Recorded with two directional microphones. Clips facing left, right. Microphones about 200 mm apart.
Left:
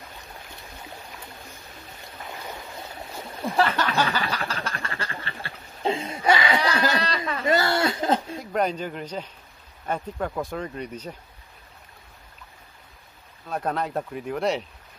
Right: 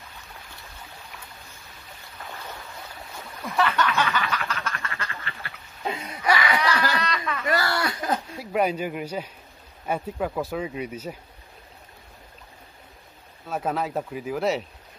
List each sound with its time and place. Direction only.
2.8 s a sound: 25° left (ahead or behind)
8.4 s speech: 10° right (ahead or behind)
13.5 s speech: 5° right (ahead or behind)